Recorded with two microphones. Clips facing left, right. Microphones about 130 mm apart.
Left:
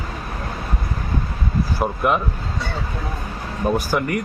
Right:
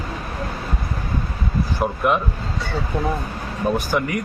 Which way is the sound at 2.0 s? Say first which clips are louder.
Even; centre (ahead or behind).